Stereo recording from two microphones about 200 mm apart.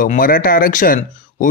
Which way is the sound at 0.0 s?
45° left (ahead or behind).